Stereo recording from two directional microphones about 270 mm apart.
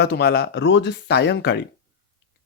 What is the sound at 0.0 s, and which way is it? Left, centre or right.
Speech, left.